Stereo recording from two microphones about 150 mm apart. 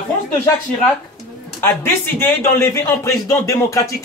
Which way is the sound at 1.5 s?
15° left (ahead or behind).